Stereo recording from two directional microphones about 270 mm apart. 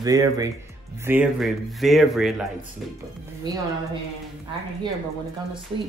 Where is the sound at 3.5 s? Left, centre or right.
Centre.